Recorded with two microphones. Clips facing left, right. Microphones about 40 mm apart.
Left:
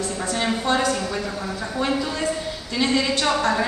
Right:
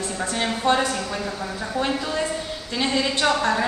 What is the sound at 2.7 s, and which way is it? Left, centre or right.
Speech, centre.